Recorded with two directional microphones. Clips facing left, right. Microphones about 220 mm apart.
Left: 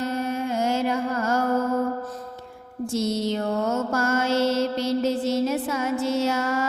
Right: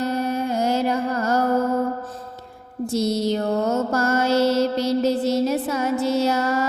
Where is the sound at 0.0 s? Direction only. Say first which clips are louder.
Right 3 dB; 35° right (ahead or behind).